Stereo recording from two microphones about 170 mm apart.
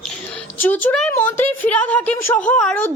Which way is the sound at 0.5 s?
10° left (ahead or behind).